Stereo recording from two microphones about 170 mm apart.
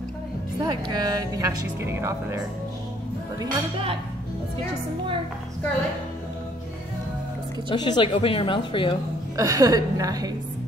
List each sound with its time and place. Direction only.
0.6 s a woman's voice: 25° right (ahead or behind)
3.3 s speech: 30° right (ahead or behind)
7.7 s speech: 25° left (ahead or behind)
9.4 s a woman's voice: 20° right (ahead or behind)